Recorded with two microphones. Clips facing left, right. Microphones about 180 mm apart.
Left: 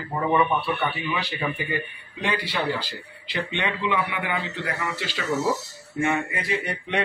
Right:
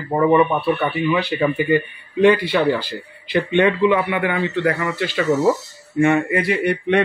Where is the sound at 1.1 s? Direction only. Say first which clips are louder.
Right 9 dB; 60° right (ahead or behind).